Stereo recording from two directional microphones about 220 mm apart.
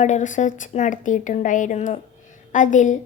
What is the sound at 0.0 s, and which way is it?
A woman's voice, 35° left (ahead or behind).